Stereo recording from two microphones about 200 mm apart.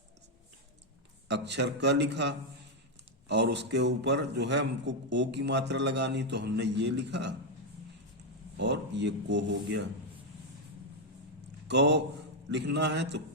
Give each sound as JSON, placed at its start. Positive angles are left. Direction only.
{"t": 1.3, "sound": "a man's voice", "side_deg": -60}
{"t": 8.5, "sound": "a man's voice", "side_deg": -60}
{"t": 11.7, "sound": "a man's voice", "side_deg": -60}